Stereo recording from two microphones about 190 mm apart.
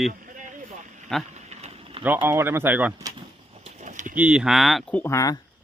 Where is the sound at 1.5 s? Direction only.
35° right (ahead or behind).